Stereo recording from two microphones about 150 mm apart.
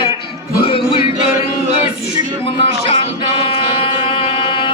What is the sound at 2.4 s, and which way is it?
Music, 40° left (ahead or behind).